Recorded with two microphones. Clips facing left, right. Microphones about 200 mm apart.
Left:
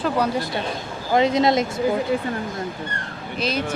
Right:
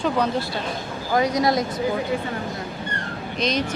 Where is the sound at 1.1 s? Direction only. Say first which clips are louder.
Left 3 dB; 25° left (ahead or behind).